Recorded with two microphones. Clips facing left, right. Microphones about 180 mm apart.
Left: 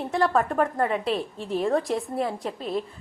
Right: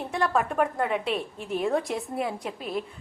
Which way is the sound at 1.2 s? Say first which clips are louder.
Left 2 dB; 30° left (ahead or behind).